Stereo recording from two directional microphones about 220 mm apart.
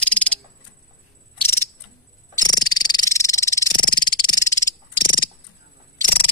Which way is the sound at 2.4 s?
20° left (ahead or behind).